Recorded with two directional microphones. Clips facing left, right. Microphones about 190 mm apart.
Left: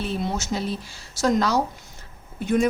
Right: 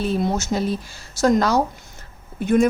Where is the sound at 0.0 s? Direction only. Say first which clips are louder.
Right 5 dB; 45° right (ahead or behind).